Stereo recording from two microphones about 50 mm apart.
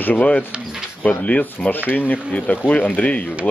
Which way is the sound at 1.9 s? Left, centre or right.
Left.